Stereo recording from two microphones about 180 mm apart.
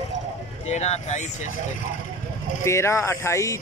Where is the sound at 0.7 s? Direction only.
40° left (ahead or behind).